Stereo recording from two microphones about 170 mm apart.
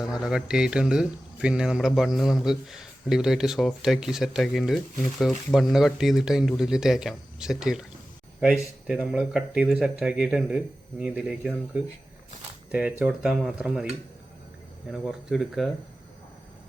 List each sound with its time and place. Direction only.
0.1 s speech: 5° right (ahead or behind)
14.9 s speech: centre (ahead or behind)